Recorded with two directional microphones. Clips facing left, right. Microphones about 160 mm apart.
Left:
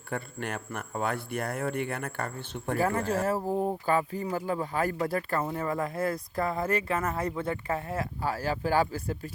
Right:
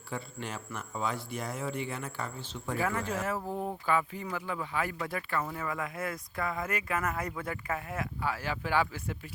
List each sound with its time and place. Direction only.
0.1 s speech: 60° left (ahead or behind)
2.7 s speech: 35° left (ahead or behind)
3.8 s speech: 40° left (ahead or behind)